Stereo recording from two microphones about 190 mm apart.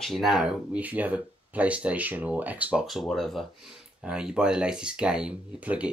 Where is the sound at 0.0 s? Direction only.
Centre (ahead or behind).